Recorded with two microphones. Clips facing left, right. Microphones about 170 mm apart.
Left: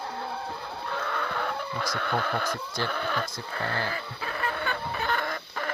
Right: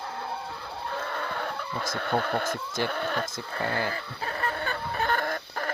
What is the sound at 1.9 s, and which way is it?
Speech, 45° right (ahead or behind).